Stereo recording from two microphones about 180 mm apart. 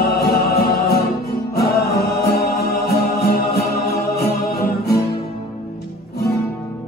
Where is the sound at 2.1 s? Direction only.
60° left (ahead or behind).